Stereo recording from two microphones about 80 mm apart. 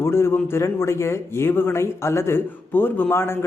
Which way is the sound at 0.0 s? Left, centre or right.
Left.